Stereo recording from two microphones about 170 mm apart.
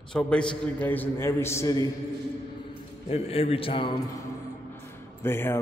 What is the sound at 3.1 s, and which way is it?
Speech, 35° left (ahead or behind).